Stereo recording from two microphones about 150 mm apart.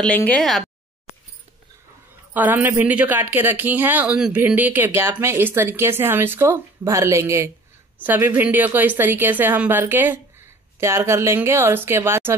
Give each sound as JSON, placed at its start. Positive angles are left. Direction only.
{"t": 0.0, "sound": "speech", "side_deg": 10}
{"t": 2.3, "sound": "speech", "side_deg": -10}